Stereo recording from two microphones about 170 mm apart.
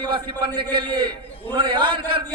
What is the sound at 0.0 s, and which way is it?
A man's voice, 30° right (ahead or behind).